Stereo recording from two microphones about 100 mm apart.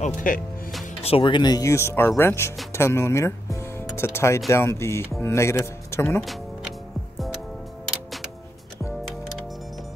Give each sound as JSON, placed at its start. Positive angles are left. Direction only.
{"t": 1.0, "sound": "speech", "side_deg": 65}